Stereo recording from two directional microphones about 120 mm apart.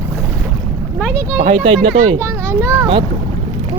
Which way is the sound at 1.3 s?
75° right (ahead or behind).